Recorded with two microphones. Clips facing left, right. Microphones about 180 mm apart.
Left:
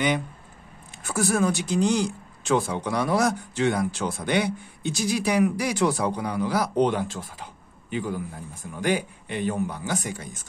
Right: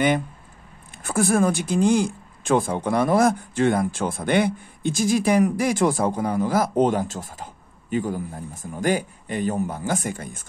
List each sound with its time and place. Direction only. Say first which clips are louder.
0.9 s speech: right 4 dB; 55° right (ahead or behind)